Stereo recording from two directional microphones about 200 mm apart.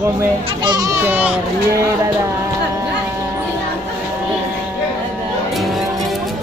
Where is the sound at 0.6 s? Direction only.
15° right (ahead or behind).